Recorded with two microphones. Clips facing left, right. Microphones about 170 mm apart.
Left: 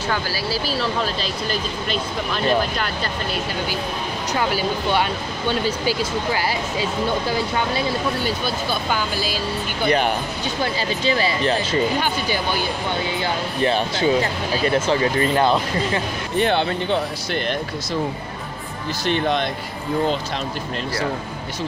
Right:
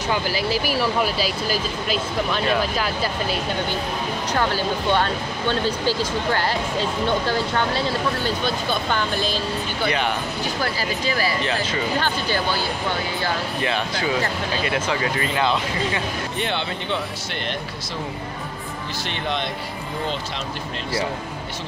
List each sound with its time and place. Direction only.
0.1 s speech: 20° right (ahead or behind)
4.4 s speech: 10° left (ahead or behind)
9.8 s speech: 45° left (ahead or behind)
10.4 s speech: 20° left (ahead or behind)
13.7 s speech: 30° left (ahead or behind)
19.0 s speech: 45° left (ahead or behind)